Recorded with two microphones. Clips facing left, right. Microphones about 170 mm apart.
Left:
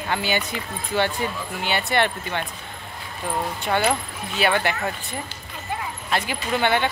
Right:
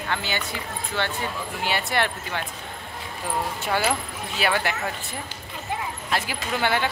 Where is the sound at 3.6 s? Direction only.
5° right (ahead or behind).